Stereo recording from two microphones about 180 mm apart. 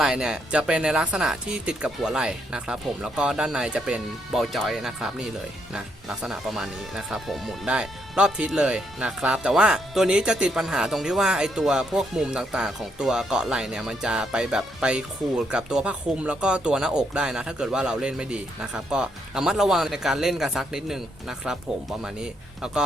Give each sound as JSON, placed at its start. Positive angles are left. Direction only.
{"t": 0.0, "sound": "speech", "side_deg": -5}
{"t": 6.2, "sound": "speech", "side_deg": 0}